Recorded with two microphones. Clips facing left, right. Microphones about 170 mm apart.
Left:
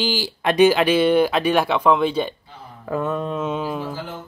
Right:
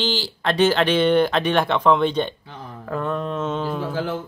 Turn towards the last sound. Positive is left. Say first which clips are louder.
# even
turn(degrees=5)  # may be behind; listen again after turning